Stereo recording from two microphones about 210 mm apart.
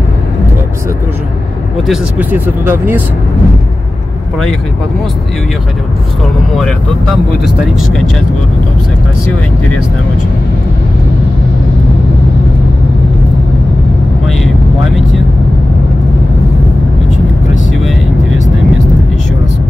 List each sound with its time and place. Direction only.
1.9 s speech: 10° right (ahead or behind)